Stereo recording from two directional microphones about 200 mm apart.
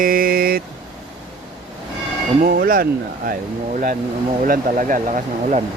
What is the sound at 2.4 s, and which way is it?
Speech, 45° right (ahead or behind).